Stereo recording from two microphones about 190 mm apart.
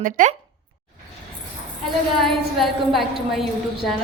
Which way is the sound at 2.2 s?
Centre (ahead or behind).